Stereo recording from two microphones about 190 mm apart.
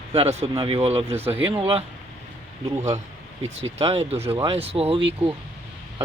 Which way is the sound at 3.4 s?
30° right (ahead or behind).